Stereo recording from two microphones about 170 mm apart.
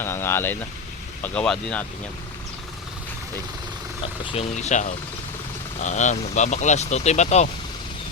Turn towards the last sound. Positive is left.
turn(degrees=40)  # may be behind; listen again after turning